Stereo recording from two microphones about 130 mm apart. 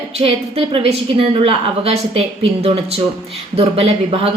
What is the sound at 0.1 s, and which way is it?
A woman's voice, 50° right (ahead or behind).